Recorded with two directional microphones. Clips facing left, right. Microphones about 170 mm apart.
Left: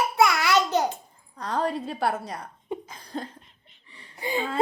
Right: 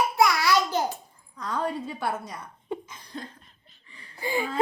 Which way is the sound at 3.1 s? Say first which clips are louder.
Left 5 dB; 30° left (ahead or behind).